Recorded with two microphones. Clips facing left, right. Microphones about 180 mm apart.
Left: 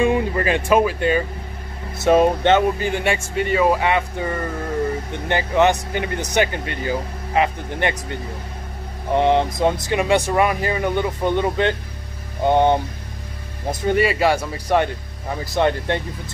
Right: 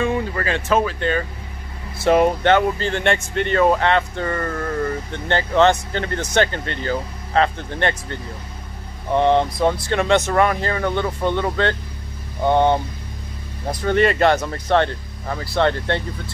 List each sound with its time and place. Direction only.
0.0 s speech: 15° left (ahead or behind)
2.0 s speech: 20° left (ahead or behind)
13.8 s speech: 5° left (ahead or behind)